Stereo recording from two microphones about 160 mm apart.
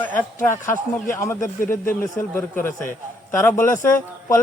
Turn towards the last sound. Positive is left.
turn(degrees=15)  # may be behind; listen again after turning